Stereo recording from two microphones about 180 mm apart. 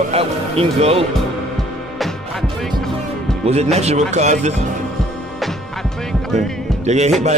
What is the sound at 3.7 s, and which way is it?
Speech, 35° right (ahead or behind).